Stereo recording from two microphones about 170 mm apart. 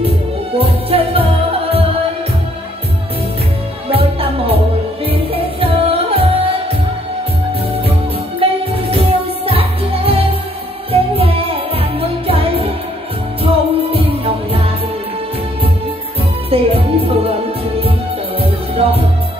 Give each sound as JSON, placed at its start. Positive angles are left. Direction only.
{"t": 0.6, "sound": "music", "side_deg": -35}
{"t": 3.9, "sound": "music", "side_deg": -35}
{"t": 8.4, "sound": "music", "side_deg": -35}
{"t": 13.9, "sound": "music", "side_deg": -35}
{"t": 16.4, "sound": "music", "side_deg": -35}